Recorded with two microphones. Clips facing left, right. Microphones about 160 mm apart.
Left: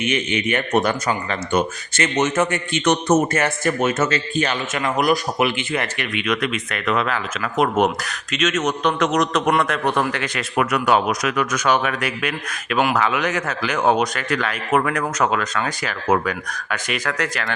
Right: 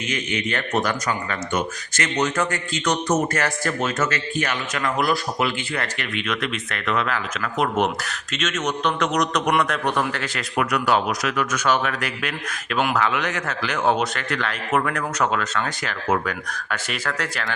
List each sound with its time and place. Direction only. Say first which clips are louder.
0.0 s speech: left 5 dB; 25° left (ahead or behind)
8.4 s a man's voice: left 4 dB; 10° left (ahead or behind)
10.3 s speech: left 2 dB; 25° left (ahead or behind)